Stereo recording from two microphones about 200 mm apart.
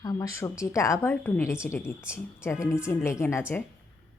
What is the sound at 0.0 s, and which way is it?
A woman's voice, 15° left (ahead or behind).